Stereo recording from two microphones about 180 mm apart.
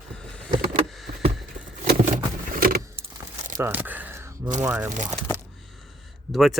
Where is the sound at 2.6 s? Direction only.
55° right (ahead or behind).